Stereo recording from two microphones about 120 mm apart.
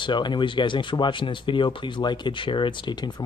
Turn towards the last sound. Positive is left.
turn(degrees=40)  # may be behind; listen again after turning